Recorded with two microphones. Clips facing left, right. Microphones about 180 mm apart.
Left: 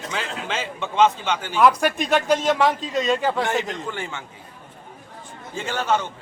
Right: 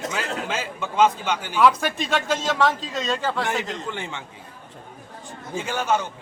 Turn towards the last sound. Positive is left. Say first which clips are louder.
# even
turn(degrees=-10)  # may be behind; listen again after turning